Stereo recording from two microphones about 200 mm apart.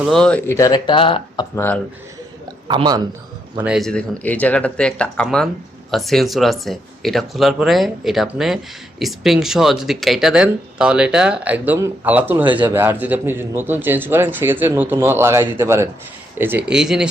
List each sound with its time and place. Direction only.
0.0 s speech: centre (ahead or behind); by 1.5 s 25° left (ahead or behind)
1.5 s speech: 10° left (ahead or behind)
2.6 s speech: 20° right (ahead or behind)
3.6 s speech: centre (ahead or behind)